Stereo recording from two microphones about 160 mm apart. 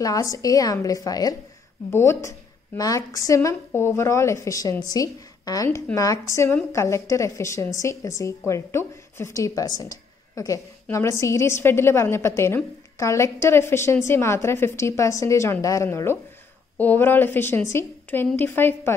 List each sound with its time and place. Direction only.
0.0 s a woman's voice: 20° left (ahead or behind)